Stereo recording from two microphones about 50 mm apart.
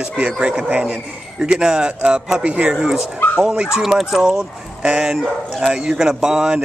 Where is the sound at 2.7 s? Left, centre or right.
Centre.